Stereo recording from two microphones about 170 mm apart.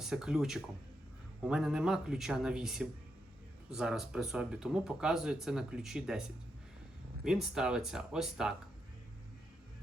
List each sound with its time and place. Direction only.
0.0 s speech: 5° right (ahead or behind)
7.3 s speech: 5° right (ahead or behind)